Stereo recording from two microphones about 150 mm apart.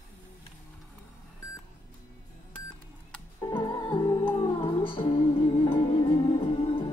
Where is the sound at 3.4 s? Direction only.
30° left (ahead or behind).